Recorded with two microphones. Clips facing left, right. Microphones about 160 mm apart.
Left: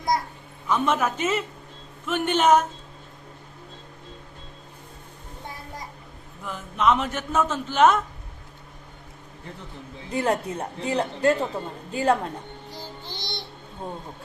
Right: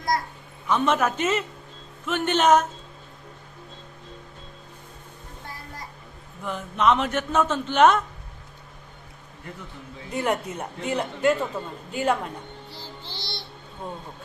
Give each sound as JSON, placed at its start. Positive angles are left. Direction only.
{"t": 0.7, "sound": "a man's voice", "side_deg": 5}
{"t": 6.4, "sound": "a man's voice", "side_deg": 0}
{"t": 10.1, "sound": "a woman's voice", "side_deg": 30}
{"t": 13.1, "sound": "music", "side_deg": 20}